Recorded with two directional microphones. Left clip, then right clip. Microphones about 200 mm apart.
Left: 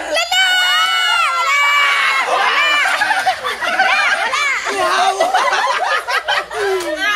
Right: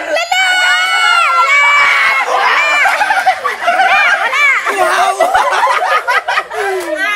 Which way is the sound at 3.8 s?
5° right (ahead or behind).